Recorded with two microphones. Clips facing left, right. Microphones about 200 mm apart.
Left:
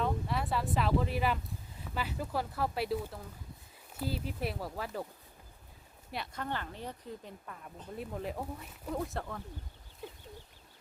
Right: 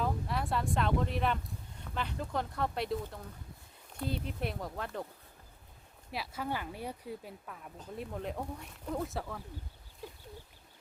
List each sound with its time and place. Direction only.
0.0 s speech: centre (ahead or behind)
6.1 s speech: 5° right (ahead or behind)